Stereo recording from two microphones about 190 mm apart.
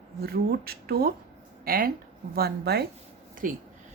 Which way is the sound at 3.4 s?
45° right (ahead or behind).